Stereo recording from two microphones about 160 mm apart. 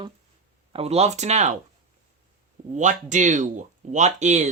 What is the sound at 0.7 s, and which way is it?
Speech, 40° right (ahead or behind).